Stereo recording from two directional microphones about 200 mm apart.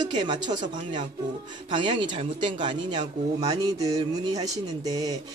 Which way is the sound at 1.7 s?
25° right (ahead or behind).